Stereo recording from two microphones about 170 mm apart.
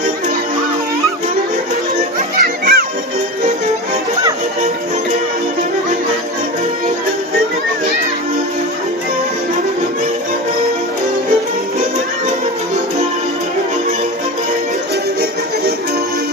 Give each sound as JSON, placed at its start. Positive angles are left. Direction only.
{"t": 2.3, "sound": "music", "side_deg": -60}